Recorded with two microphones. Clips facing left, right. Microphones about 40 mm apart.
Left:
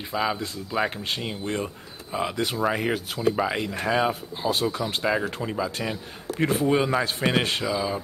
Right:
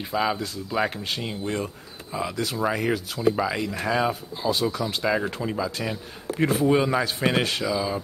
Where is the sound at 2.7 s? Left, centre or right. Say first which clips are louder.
Even; centre.